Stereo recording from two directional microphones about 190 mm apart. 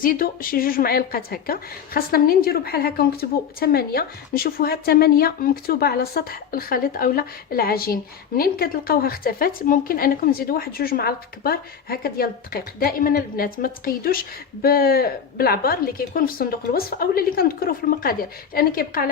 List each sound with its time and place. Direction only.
0.0 s speech: 50° left (ahead or behind)